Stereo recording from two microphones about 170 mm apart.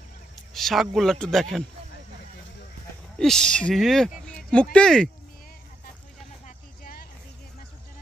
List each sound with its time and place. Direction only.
0.6 s a man's voice: centre (ahead or behind)
3.2 s a man's voice: 5° left (ahead or behind)
6.4 s vehicle: 55° left (ahead or behind)